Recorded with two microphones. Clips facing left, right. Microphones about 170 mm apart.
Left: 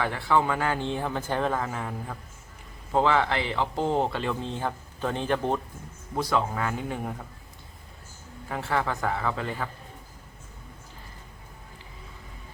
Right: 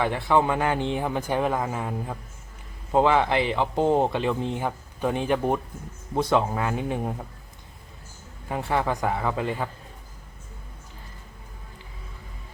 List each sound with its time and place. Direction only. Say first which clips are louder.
0.0 s a man's voice: right 3 dB; 20° right (ahead or behind)
6.1 s speech: right 4 dB; 20° right (ahead or behind)
8.4 s a man's voice: right 3 dB; 15° right (ahead or behind)